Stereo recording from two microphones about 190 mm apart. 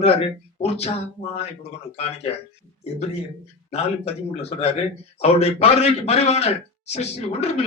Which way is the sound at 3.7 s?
35° left (ahead or behind).